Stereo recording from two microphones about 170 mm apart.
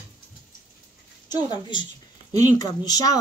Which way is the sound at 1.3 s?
25° left (ahead or behind).